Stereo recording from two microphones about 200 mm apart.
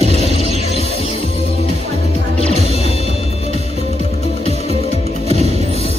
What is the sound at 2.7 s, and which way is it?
Music, 30° left (ahead or behind).